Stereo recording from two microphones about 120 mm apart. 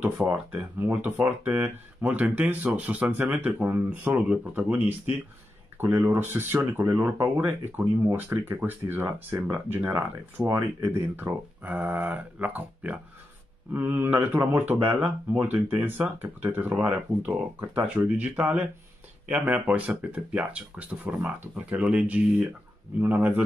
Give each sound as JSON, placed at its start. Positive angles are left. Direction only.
{"t": 0.2, "sound": "speech", "side_deg": -15}